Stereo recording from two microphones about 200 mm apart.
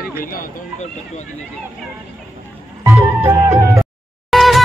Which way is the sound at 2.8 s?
10° right (ahead or behind).